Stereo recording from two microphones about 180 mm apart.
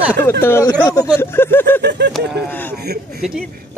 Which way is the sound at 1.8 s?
70° right (ahead or behind).